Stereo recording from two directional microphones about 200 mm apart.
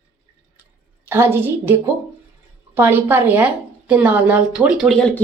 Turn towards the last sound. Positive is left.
turn(degrees=0)  # may be behind; listen again after turning